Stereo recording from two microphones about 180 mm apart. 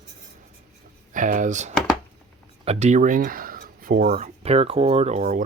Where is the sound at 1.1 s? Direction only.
45° right (ahead or behind).